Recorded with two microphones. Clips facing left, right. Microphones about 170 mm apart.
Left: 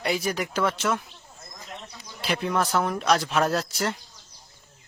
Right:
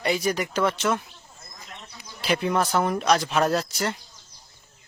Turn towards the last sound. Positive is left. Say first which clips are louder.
# right 1 dB
turn(degrees=0)  # may be behind; listen again after turning